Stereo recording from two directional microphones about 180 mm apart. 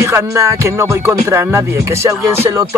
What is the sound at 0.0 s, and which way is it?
Music, 15° right (ahead or behind).